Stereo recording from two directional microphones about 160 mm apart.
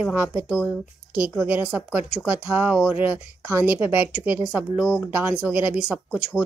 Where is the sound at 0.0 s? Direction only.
5° right (ahead or behind).